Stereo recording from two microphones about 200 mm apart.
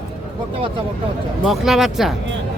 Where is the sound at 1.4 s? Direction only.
Centre (ahead or behind).